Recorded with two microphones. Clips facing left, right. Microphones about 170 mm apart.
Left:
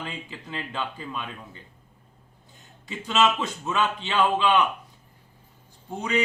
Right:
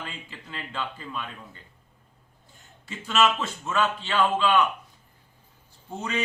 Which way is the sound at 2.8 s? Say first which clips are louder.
Left 1 dB; 20° left (ahead or behind).